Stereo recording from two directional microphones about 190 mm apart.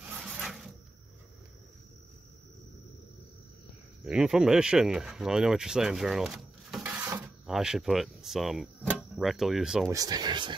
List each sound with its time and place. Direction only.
0.0 s rub: 5° right (ahead or behind)
4.0 s speech: 5° right (ahead or behind)
9.8 s speech: 20° right (ahead or behind)